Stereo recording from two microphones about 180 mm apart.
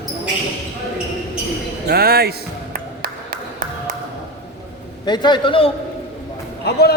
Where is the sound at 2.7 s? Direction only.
55° right (ahead or behind).